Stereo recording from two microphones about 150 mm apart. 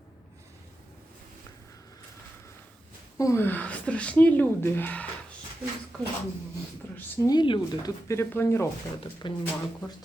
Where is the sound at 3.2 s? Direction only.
20° left (ahead or behind).